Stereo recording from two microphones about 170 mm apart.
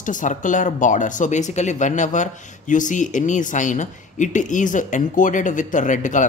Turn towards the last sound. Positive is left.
turn(degrees=50)  # may be behind; listen again after turning